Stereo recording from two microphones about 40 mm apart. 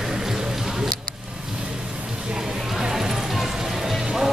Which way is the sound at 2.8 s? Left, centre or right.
Centre.